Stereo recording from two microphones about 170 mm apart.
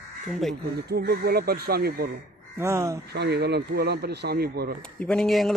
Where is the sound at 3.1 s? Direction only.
75° right (ahead or behind).